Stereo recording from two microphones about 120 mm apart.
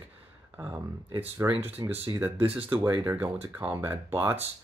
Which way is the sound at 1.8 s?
35° right (ahead or behind).